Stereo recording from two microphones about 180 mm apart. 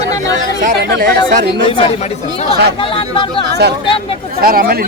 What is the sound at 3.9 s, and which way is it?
Speech, 30° left (ahead or behind).